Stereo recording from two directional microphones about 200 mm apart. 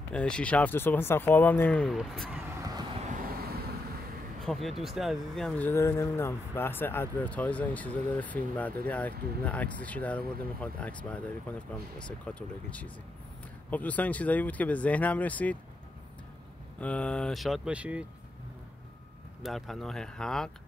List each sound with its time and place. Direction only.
0.1 s speech: 5° left (ahead or behind)
2.2 s vehicle: 10° right (ahead or behind)
3.1 s vehicle: 45° right (ahead or behind)
4.4 s speech: centre (ahead or behind)
16.8 s speech: 5° left (ahead or behind)
19.4 s speech: centre (ahead or behind)